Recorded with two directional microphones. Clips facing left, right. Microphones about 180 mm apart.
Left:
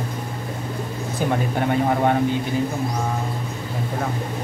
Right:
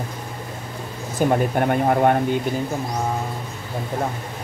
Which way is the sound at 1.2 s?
50° right (ahead or behind).